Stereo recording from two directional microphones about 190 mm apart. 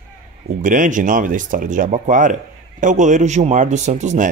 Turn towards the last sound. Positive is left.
turn(degrees=-40)  # may be behind; listen again after turning